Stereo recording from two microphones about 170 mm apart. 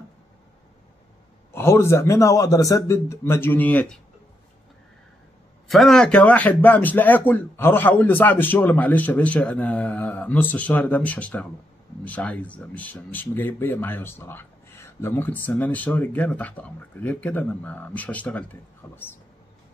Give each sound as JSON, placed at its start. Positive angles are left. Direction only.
{"t": 1.5, "sound": "speech", "side_deg": 15}
{"t": 5.7, "sound": "speech", "side_deg": 0}